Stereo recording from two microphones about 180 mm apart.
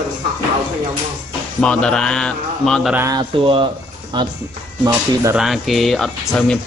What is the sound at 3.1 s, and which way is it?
Speech, 25° right (ahead or behind).